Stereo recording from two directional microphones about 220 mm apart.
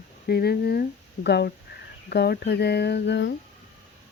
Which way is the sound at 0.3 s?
45° left (ahead or behind).